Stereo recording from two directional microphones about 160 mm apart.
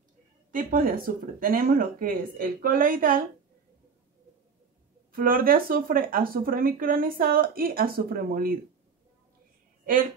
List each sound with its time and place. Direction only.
0.5 s speech: 60° right (ahead or behind)
5.1 s speech: 60° right (ahead or behind)